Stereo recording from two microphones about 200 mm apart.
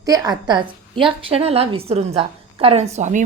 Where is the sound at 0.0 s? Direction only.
15° right (ahead or behind).